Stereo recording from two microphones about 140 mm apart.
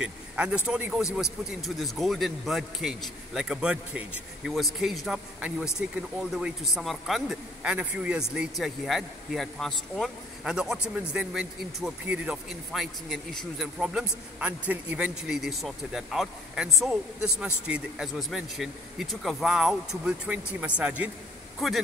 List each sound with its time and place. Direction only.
0.0 s a woman's voice: 10° right (ahead or behind)